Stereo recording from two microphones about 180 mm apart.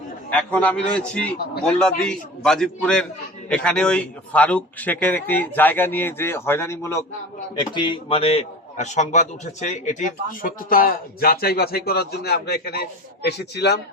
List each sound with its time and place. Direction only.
0.3 s a man's voice: 5° left (ahead or behind); by 13.7 s 70° left (ahead or behind)